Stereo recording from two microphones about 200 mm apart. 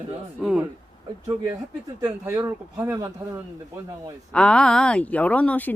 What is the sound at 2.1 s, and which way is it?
Speech, 10° right (ahead or behind).